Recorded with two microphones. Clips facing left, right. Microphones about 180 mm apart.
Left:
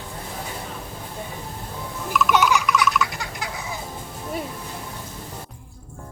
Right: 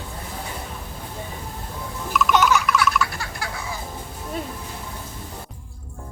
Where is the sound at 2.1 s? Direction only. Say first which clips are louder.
Right 1 dB; centre (ahead or behind).